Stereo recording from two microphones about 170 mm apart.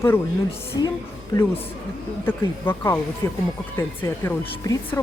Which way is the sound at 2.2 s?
15° left (ahead or behind).